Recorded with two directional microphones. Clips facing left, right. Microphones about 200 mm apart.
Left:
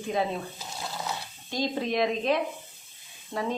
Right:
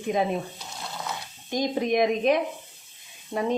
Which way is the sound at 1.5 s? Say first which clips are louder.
Right 4 dB; 15° right (ahead or behind).